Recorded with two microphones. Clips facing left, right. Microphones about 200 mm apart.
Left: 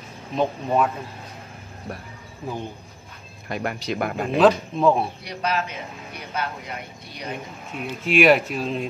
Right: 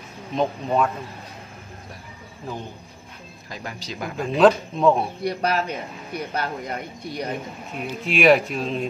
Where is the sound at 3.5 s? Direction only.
60° left (ahead or behind).